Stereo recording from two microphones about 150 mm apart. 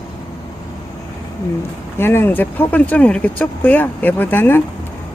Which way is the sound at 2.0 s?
15° left (ahead or behind).